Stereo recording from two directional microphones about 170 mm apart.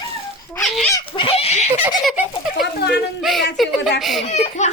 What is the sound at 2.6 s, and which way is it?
Speech, 65° left (ahead or behind).